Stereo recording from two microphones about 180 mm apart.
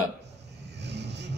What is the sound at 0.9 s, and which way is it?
Vehicle, 70° right (ahead or behind).